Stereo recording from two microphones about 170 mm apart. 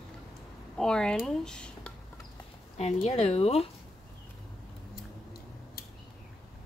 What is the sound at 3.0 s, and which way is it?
Speech, 40° left (ahead or behind).